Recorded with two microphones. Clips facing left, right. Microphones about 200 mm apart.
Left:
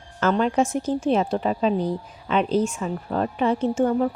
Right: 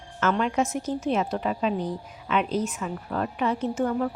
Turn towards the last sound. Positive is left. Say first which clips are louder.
# left 5 dB
turn(degrees=25)  # may be behind; listen again after turning